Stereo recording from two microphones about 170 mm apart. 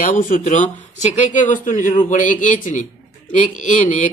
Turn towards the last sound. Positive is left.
turn(degrees=45)  # may be behind; listen again after turning